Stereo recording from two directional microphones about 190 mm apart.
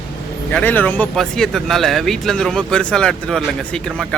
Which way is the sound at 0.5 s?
10° left (ahead or behind).